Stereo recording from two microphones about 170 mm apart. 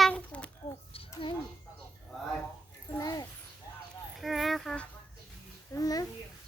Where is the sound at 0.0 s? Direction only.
5° left (ahead or behind).